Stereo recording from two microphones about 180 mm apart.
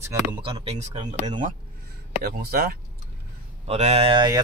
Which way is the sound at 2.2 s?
60° right (ahead or behind).